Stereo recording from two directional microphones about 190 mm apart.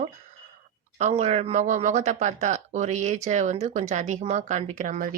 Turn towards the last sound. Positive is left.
turn(degrees=-40)  # may be behind; listen again after turning